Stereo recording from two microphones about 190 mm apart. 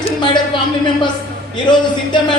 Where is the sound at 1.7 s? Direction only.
25° left (ahead or behind).